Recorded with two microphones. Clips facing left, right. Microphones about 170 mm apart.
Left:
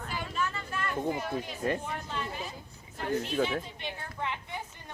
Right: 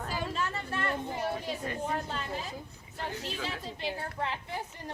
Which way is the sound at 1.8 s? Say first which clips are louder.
Right 4 dB; 40° right (ahead or behind).